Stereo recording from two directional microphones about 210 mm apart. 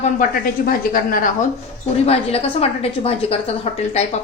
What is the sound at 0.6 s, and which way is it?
Speech, 45° left (ahead or behind).